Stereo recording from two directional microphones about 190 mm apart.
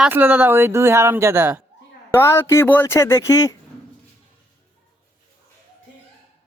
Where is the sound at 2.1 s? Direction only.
15° left (ahead or behind).